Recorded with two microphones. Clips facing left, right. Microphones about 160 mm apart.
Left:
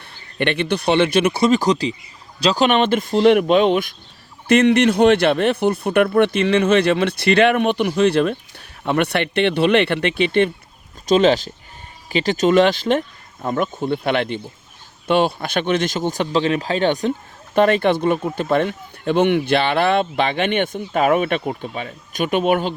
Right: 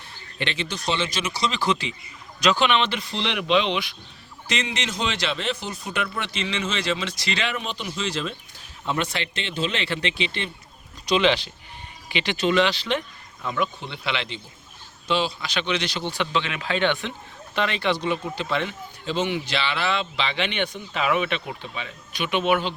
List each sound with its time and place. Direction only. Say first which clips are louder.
0.3 s speech: left 10 dB; 60° left (ahead or behind)
11.0 s speech: left 6 dB; 45° left (ahead or behind)